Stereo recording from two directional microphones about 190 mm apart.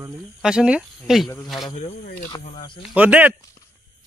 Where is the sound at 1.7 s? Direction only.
40° left (ahead or behind).